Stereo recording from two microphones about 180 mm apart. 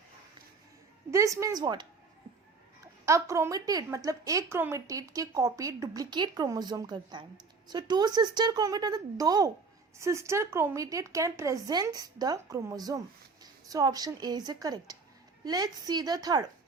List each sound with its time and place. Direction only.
1.1 s a woman's voice: 15° right (ahead or behind)
3.1 s speech: 15° right (ahead or behind)